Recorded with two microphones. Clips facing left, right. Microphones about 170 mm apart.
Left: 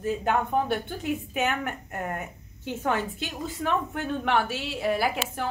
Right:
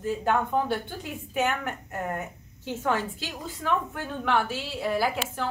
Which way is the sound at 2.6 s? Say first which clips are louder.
Even; 20° left (ahead or behind).